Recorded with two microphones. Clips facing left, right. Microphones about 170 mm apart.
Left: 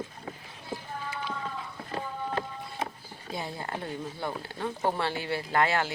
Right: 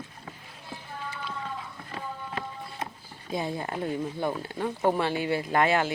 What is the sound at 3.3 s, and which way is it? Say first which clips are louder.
Speech: right 4 dB; 20° right (ahead or behind).